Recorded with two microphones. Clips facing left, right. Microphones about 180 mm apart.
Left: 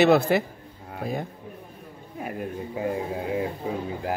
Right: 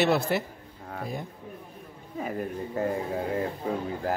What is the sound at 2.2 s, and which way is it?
Speech, 5° left (ahead or behind).